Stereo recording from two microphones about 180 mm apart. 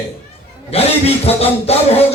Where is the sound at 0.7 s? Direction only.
35° left (ahead or behind).